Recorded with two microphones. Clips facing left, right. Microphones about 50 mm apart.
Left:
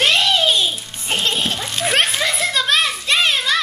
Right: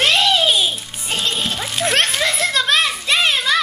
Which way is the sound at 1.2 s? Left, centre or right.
Left.